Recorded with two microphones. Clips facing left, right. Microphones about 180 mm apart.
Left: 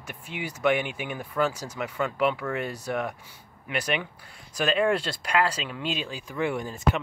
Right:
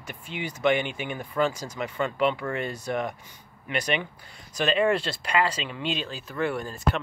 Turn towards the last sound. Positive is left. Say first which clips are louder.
# left 1 dB
turn(degrees=15)  # may be behind; listen again after turning